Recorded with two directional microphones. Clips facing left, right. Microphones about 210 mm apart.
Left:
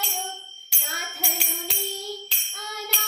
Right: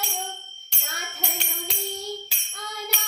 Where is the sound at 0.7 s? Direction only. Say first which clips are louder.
Even; 5° left (ahead or behind).